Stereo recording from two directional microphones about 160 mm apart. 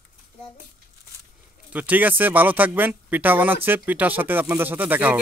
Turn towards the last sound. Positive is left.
turn(degrees=-10)  # may be behind; listen again after turning